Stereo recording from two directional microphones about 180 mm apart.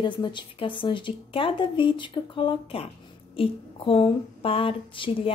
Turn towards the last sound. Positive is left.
turn(degrees=30)  # may be behind; listen again after turning